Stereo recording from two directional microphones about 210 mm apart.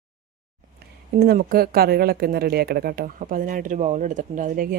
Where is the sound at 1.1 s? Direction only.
45° right (ahead or behind).